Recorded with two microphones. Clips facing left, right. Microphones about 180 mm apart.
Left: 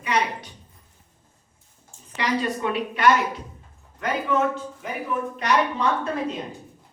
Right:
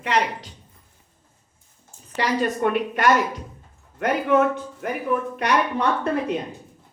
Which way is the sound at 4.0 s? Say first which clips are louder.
Right 4 dB; 60° right (ahead or behind).